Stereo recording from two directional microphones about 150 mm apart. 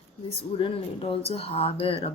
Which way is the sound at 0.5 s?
35° left (ahead or behind).